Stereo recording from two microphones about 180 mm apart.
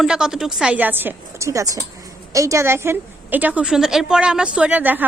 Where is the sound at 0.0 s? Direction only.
5° right (ahead or behind).